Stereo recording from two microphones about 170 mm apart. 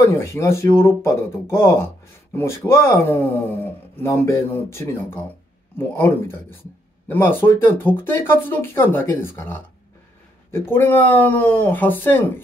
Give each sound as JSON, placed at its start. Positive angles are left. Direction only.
{"t": 0.2, "sound": "speech", "side_deg": 15}